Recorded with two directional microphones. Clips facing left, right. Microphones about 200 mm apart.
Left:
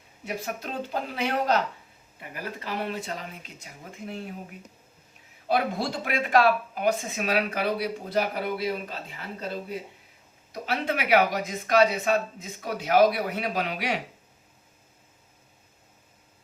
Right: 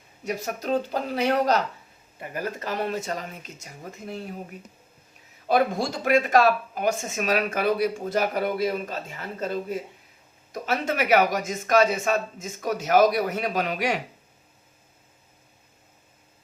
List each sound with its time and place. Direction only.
0.3 s speech: 40° right (ahead or behind)
5.5 s speech: 45° right (ahead or behind)